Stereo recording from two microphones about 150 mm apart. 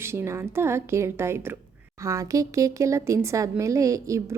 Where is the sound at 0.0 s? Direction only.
15° right (ahead or behind).